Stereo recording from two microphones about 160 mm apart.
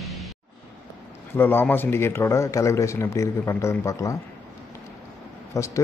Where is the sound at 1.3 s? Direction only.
15° left (ahead or behind).